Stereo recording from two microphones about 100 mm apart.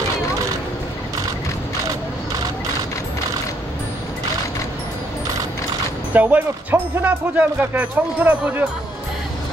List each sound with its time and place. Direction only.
6.1 s speech: 15° right (ahead or behind)